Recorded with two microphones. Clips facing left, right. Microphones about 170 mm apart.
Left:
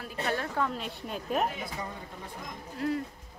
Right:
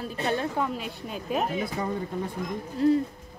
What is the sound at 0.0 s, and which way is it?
Speech, 25° right (ahead or behind).